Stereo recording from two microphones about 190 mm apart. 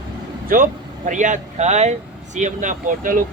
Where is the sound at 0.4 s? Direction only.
45° right (ahead or behind).